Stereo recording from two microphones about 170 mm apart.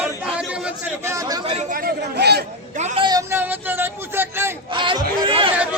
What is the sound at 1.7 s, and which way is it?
Chatter, 65° right (ahead or behind).